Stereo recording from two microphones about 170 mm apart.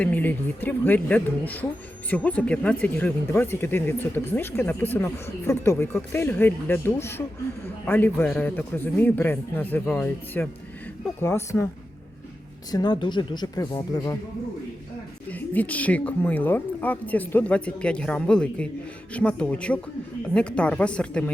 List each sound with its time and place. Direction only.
0.0 s speech: 10° left (ahead or behind)
12.7 s speech: 25° left (ahead or behind)
15.3 s speech: 10° left (ahead or behind)